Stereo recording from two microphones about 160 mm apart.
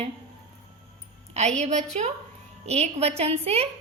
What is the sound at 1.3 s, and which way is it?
A woman's voice, 45° right (ahead or behind).